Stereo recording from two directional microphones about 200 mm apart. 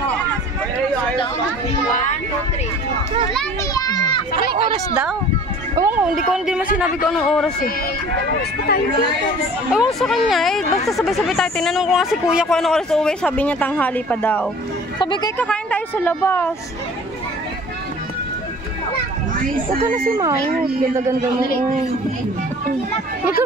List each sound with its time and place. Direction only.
1.9 s speech: 40° left (ahead or behind)
3.7 s children playing: 20° left (ahead or behind)
4.5 s a sound: 25° right (ahead or behind)
5.8 s speech: 10° right (ahead or behind)
8.4 s speech: 50° left (ahead or behind)
9.7 s speech: centre (ahead or behind)
15.0 s speech: 25° left (ahead or behind)
15.3 s a woman's voice: 5° left (ahead or behind)
19.7 s speech: 45° right (ahead or behind)